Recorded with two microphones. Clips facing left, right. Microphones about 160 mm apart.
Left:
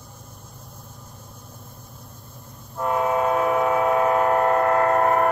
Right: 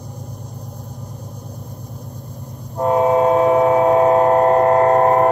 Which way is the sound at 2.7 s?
35° right (ahead or behind).